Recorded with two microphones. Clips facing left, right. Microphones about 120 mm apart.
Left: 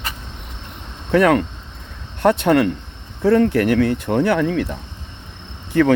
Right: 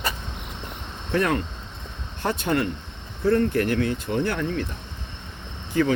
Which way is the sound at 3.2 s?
90° left.